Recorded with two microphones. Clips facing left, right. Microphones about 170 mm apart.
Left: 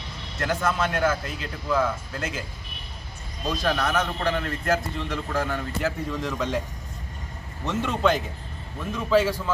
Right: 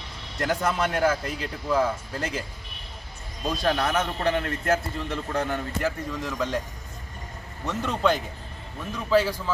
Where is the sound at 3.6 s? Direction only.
10° right (ahead or behind).